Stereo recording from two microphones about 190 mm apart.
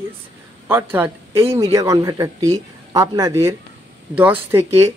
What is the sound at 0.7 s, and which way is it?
A man's voice, 10° right (ahead or behind).